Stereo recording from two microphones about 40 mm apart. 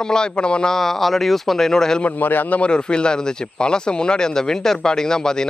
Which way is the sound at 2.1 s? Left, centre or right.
Left.